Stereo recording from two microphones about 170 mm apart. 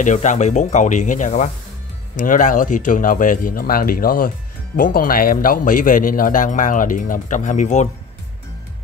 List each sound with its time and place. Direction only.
0.0 s a man's voice: 45° left (ahead or behind)